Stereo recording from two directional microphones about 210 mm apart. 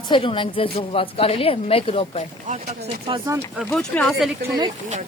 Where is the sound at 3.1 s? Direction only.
25° right (ahead or behind).